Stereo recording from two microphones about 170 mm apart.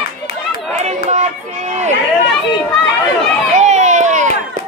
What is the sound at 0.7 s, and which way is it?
Chatter, 40° right (ahead or behind).